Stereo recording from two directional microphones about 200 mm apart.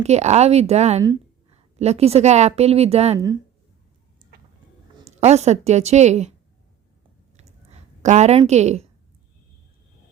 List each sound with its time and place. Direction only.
0.0 s a woman's voice: 35° right (ahead or behind)
5.2 s a woman's voice: 35° right (ahead or behind)
7.3 s a sound: 35° right (ahead or behind)